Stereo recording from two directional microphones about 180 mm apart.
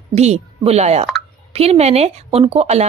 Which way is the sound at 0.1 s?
35° right (ahead or behind).